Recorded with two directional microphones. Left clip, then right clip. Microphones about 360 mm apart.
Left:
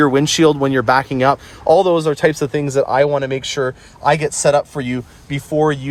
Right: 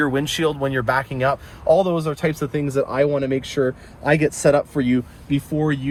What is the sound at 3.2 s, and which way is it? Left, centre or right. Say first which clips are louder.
Speech: left 2 dB; left.